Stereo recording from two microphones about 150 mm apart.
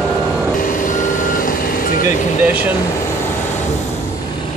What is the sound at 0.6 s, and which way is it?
Reversing beeps, 65° left (ahead or behind).